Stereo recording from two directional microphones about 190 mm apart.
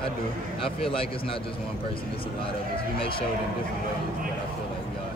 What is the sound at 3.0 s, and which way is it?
Speech, 30° left (ahead or behind).